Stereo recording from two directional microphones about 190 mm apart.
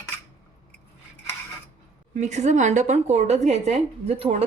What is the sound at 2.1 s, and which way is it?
Speech, 40° right (ahead or behind).